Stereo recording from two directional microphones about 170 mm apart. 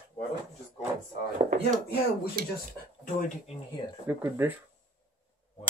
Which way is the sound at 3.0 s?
45° left (ahead or behind).